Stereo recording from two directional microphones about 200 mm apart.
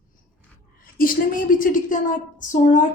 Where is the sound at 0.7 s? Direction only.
45° left (ahead or behind).